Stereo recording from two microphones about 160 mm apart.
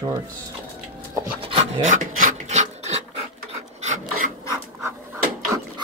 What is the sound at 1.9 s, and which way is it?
Filing, 50° right (ahead or behind).